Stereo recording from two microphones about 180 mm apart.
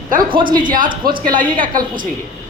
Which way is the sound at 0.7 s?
50° right (ahead or behind).